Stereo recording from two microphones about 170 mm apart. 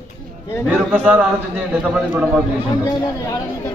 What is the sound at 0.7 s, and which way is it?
A man's voice, 5° right (ahead or behind).